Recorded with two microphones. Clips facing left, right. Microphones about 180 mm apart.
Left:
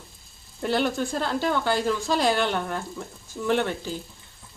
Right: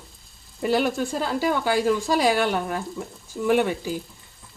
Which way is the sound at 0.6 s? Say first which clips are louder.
Right 2 dB; 5° right (ahead or behind).